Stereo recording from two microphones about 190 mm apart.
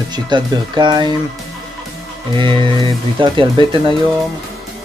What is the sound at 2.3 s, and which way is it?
Speech, 25° right (ahead or behind).